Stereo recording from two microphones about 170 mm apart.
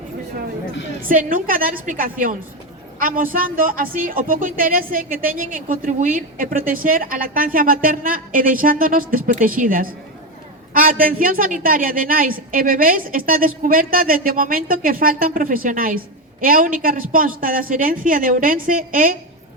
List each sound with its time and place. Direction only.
1.0 s a woman's voice: 55° right (ahead or behind)